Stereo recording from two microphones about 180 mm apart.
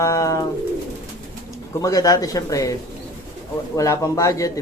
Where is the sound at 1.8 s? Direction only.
20° left (ahead or behind).